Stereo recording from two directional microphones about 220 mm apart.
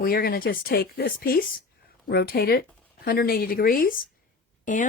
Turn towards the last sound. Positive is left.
turn(degrees=35)  # may be behind; listen again after turning